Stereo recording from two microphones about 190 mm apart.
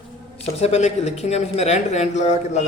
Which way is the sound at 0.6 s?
35° left (ahead or behind).